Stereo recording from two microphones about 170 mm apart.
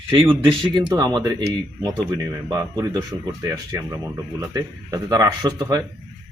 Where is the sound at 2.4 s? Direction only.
20° right (ahead or behind).